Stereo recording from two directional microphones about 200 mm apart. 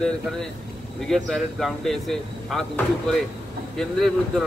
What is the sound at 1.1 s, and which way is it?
Speech, centre (ahead or behind).